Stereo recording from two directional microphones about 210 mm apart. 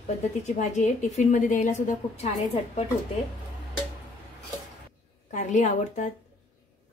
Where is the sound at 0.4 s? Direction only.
35° left (ahead or behind).